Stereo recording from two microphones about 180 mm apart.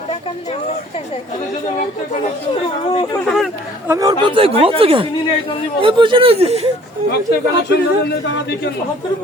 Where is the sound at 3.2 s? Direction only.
Centre (ahead or behind).